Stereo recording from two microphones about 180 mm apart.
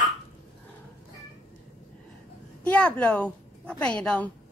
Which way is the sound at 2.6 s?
5° left (ahead or behind).